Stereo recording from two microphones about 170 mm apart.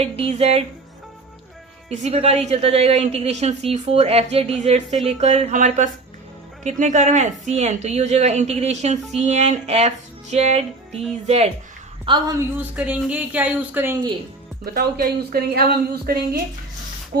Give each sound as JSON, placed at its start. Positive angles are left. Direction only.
{"t": 0.0, "sound": "speech", "side_deg": -35}
{"t": 1.9, "sound": "a woman's voice", "side_deg": -40}
{"t": 12.0, "sound": "a woman's voice", "side_deg": -25}
{"t": 12.7, "sound": "speech", "side_deg": -10}
{"t": 14.6, "sound": "speech", "side_deg": -65}